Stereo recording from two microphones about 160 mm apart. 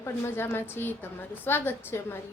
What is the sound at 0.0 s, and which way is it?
A woman's voice, 15° left (ahead or behind).